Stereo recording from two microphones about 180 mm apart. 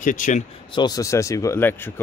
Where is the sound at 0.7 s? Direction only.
20° left (ahead or behind).